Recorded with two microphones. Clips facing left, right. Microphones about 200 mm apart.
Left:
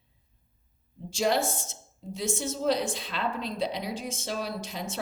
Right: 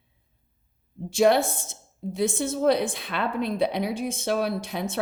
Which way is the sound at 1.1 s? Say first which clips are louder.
Right 6 dB; 60° right (ahead or behind).